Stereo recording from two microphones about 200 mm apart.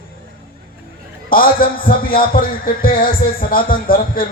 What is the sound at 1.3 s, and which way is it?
A man's voice, 45° left (ahead or behind).